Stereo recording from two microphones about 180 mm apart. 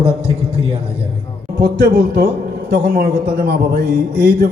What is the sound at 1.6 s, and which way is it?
A man's voice, 60° right (ahead or behind).